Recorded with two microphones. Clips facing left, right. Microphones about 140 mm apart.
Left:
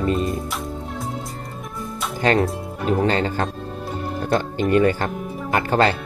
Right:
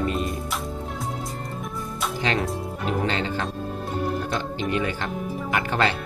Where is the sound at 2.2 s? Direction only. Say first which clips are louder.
Left 8 dB; 45° left (ahead or behind).